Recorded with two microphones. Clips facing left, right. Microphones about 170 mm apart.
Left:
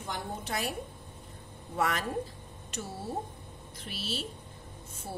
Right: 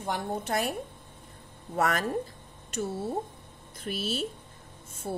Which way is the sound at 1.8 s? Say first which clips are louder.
Right 3 dB; 50° right (ahead or behind).